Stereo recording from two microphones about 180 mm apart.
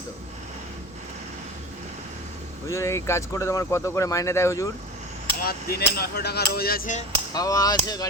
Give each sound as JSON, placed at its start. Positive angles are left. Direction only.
{"t": 2.6, "sound": "speech", "side_deg": 15}
{"t": 5.4, "sound": "speech", "side_deg": 55}
{"t": 7.3, "sound": "a sound", "side_deg": 20}